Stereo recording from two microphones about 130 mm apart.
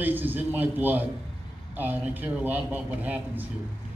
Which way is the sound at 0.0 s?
15° right (ahead or behind).